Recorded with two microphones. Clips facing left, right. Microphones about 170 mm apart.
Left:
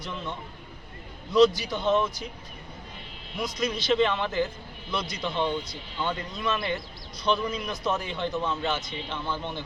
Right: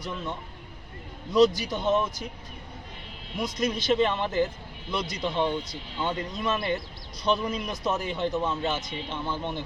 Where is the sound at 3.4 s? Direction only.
45° right (ahead or behind).